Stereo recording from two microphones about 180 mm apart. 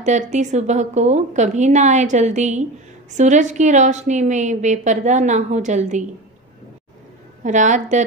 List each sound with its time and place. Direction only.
0.0 s a woman's voice: 40° right (ahead or behind)
7.4 s a woman's voice: 45° right (ahead or behind)